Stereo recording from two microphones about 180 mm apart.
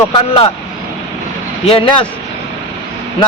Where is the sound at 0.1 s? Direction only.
30° left (ahead or behind).